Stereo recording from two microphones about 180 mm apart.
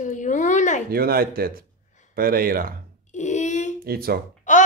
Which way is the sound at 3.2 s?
40° left (ahead or behind).